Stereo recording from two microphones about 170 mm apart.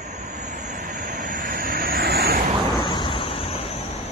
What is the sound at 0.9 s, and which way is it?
Vehicle, 50° right (ahead or behind).